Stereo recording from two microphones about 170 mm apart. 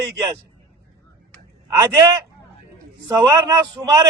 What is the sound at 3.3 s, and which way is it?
Speech, 20° right (ahead or behind).